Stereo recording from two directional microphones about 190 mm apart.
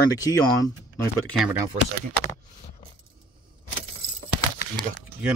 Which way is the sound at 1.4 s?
10° right (ahead or behind).